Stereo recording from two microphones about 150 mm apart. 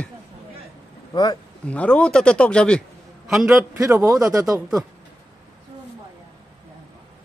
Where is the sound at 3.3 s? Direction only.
5° right (ahead or behind).